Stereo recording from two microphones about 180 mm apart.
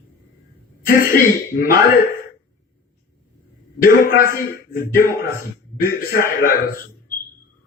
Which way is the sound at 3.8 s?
50° left (ahead or behind).